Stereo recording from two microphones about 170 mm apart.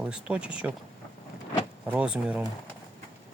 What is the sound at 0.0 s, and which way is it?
Speech, 5° right (ahead or behind).